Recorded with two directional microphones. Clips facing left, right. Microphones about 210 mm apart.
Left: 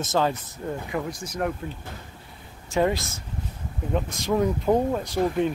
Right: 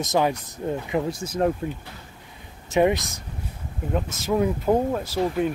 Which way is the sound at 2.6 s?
20° right (ahead or behind).